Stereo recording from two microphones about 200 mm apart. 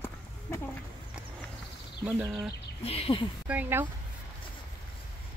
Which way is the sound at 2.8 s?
30° left (ahead or behind).